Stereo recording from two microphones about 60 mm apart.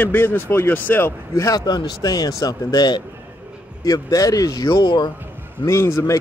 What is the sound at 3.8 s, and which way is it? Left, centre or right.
Speech, left.